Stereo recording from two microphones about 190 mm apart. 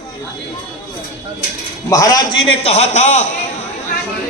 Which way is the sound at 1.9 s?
20° left (ahead or behind).